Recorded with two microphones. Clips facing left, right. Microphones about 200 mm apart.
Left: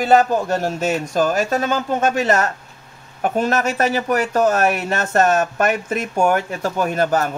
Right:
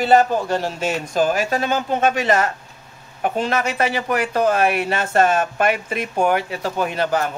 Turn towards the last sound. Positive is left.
turn(degrees=45)  # may be behind; listen again after turning